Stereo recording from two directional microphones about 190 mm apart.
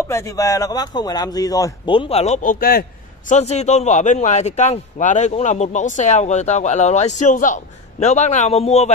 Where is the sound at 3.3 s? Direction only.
35° left (ahead or behind).